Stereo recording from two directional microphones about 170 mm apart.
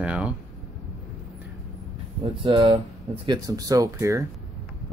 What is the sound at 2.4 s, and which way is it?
Speech, 35° right (ahead or behind).